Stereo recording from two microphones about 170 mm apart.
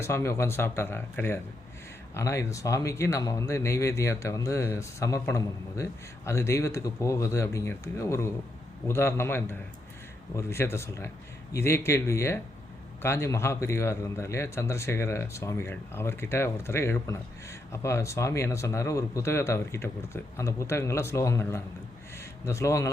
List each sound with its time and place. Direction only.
0.0 s a man's voice: 15° left (ahead or behind)